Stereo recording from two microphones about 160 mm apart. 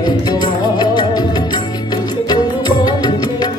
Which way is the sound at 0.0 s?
25° left (ahead or behind).